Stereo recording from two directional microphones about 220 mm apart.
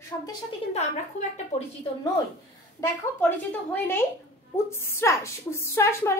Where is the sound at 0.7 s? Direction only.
35° left (ahead or behind).